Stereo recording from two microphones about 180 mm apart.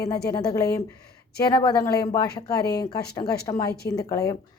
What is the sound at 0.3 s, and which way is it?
Speech, 20° left (ahead or behind).